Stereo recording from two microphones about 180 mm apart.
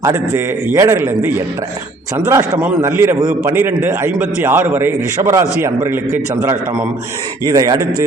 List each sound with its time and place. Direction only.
0.0 s a man's voice: 15° right (ahead or behind)